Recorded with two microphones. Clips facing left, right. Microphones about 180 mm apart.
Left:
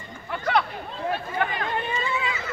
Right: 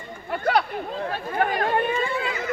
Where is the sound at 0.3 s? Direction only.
50° right (ahead or behind).